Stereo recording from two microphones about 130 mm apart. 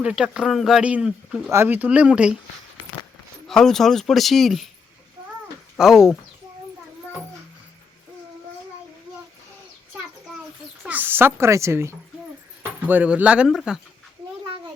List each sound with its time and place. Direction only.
0.0 s speech: 5° right (ahead or behind)
1.5 s speech: 15° right (ahead or behind)
3.4 s speech: 5° left (ahead or behind)
5.7 s speech: 5° right (ahead or behind)
10.8 s a woman's voice: 15° right (ahead or behind)